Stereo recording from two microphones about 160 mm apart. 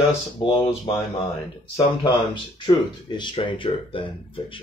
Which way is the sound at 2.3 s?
30° left (ahead or behind).